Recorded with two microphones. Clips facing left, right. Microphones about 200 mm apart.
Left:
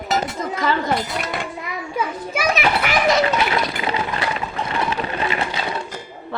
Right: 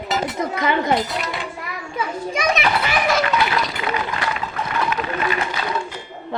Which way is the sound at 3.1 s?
20° left (ahead or behind).